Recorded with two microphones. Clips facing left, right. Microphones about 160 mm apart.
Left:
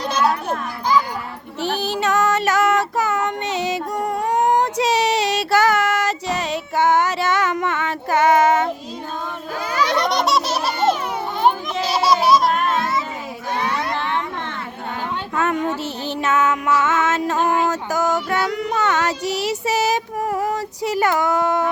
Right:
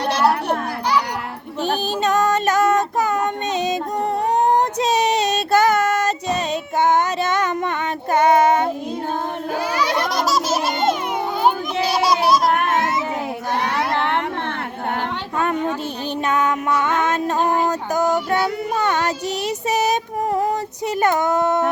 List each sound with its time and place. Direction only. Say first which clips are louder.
0.0 s children playing: right 2 dB; 65° right (ahead or behind)
1.7 s child singing: right 1 dB; 20° right (ahead or behind)
9.8 s a sound: left 4 dB; centre (ahead or behind)
11.7 s children playing: even; 60° right (ahead or behind)
12.5 s music: right 1 dB; 60° right (ahead or behind)
13.6 s a sound: right 2 dB; 60° right (ahead or behind)
16.0 s music: left 1 dB; 15° right (ahead or behind)
17.0 s female singing: even; 20° right (ahead or behind)